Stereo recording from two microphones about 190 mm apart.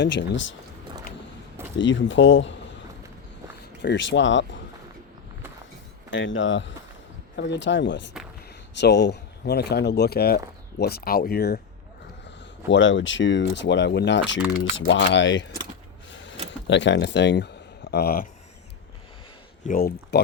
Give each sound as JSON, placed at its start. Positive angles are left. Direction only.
{"t": 0.0, "sound": "speech", "side_deg": 70}
{"t": 1.8, "sound": "speech", "side_deg": 80}
{"t": 3.8, "sound": "speech", "side_deg": 70}
{"t": 6.1, "sound": "speech", "side_deg": 85}
{"t": 7.3, "sound": "speech", "side_deg": 65}
{"t": 12.6, "sound": "speech", "side_deg": 75}
{"t": 14.3, "sound": "speech", "side_deg": 80}
{"t": 16.1, "sound": "a sound", "side_deg": 75}
{"t": 16.5, "sound": "speech", "side_deg": 70}
{"t": 17.9, "sound": "speech", "side_deg": 50}
{"t": 19.6, "sound": "speech", "side_deg": 50}